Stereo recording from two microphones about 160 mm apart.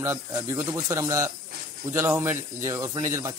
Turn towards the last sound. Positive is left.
turn(degrees=-20)  # may be behind; listen again after turning